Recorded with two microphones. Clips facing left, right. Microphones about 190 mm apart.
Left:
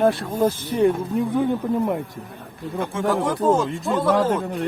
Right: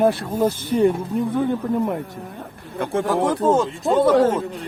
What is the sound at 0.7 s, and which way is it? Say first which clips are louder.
Speech: right 2 dB; 10° left (ahead or behind).